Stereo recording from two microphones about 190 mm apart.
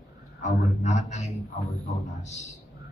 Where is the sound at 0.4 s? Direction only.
35° left (ahead or behind).